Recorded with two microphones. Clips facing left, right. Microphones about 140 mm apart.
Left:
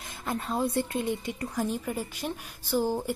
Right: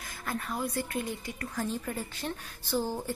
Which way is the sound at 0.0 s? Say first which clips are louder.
Left 3 dB; 25° left (ahead or behind).